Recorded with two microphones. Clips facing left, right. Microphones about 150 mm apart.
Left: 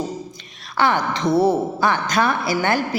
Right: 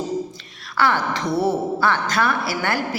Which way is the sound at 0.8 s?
20° left (ahead or behind).